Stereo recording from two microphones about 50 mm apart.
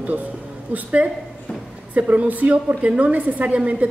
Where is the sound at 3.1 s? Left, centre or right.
Right.